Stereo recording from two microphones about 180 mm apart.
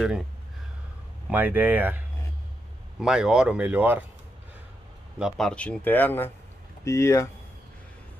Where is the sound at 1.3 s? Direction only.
10° right (ahead or behind).